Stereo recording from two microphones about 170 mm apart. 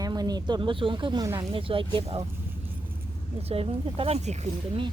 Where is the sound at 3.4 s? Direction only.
35° right (ahead or behind).